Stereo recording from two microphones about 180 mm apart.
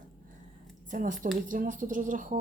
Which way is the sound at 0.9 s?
45° right (ahead or behind).